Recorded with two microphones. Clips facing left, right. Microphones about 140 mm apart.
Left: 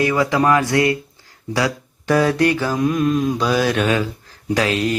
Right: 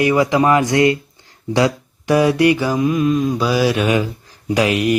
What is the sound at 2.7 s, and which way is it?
Mantra, centre (ahead or behind).